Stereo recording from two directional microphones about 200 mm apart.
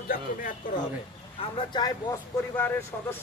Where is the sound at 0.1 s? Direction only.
45° left (ahead or behind).